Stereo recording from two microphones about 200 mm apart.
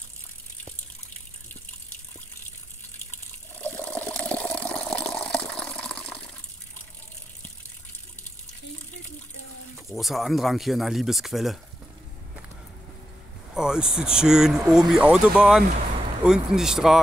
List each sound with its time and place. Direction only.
3.1 s water: 10° left (ahead or behind)
9.8 s speech: centre (ahead or behind)
13.6 s speech: 5° right (ahead or behind)